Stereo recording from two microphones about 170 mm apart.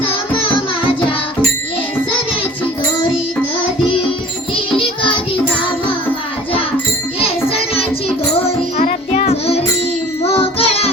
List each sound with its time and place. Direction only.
7.2 s music: 35° left (ahead or behind)
9.1 s music: 35° left (ahead or behind)